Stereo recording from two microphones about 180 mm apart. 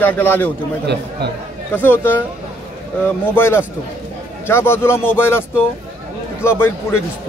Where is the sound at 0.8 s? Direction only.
65° right (ahead or behind).